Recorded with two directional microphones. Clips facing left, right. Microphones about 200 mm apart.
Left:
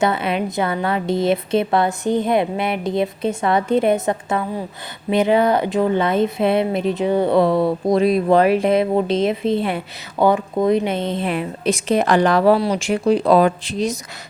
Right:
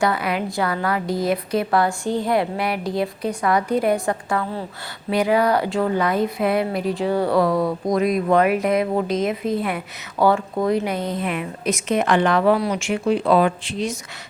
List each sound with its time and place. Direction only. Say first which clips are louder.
0.0 s speech: left 2 dB; 25° left (ahead or behind)